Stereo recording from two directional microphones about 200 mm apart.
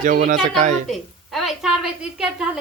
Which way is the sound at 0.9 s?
Centre (ahead or behind).